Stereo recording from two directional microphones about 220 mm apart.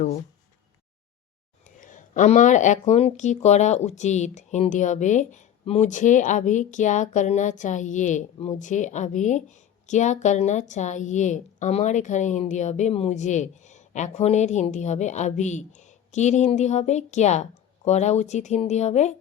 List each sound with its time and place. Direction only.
1.6 s speech: 35° left (ahead or behind)